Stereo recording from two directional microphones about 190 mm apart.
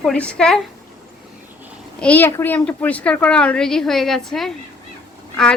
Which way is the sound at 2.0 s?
10° left (ahead or behind).